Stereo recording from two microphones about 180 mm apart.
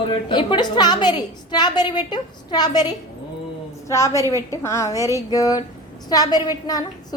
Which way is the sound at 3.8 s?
15° left (ahead or behind).